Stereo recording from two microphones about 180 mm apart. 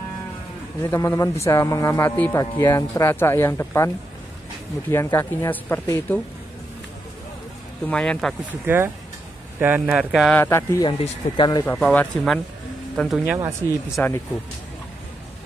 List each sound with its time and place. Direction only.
0.8 s speech: 15° left (ahead or behind)
7.8 s speech: 5° left (ahead or behind)
8.5 s speech: 10° right (ahead or behind)
10.3 s speech: 15° left (ahead or behind)
10.9 s speech: 30° left (ahead or behind)
11.6 s speech: 10° left (ahead or behind)